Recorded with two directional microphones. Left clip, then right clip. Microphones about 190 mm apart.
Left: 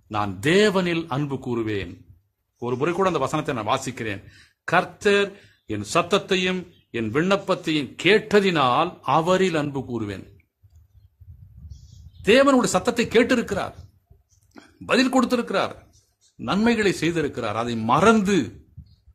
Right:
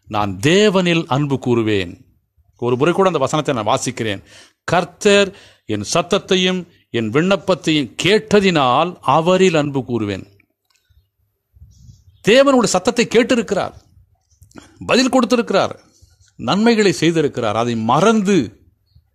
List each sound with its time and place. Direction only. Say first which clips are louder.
0.1 s speech: right 5 dB; 40° right (ahead or behind)
12.2 s speech: right 5 dB; 45° right (ahead or behind)
14.9 s speech: right 6 dB; 40° right (ahead or behind)